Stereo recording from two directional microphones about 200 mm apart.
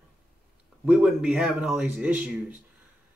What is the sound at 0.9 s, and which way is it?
Speech, 5° right (ahead or behind).